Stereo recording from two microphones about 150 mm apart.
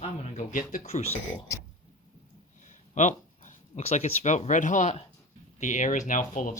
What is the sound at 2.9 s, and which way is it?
Speech, 55° left (ahead or behind).